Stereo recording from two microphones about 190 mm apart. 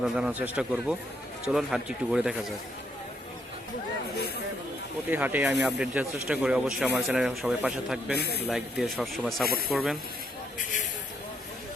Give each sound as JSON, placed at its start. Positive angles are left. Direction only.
{"t": 0.0, "sound": "speech", "side_deg": -5}
{"t": 5.1, "sound": "speech", "side_deg": -10}
{"t": 8.2, "sound": "speech", "side_deg": 60}
{"t": 8.4, "sound": "speech", "side_deg": 0}